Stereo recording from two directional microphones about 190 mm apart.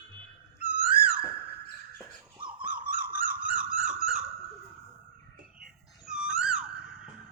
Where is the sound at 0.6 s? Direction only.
50° right (ahead or behind).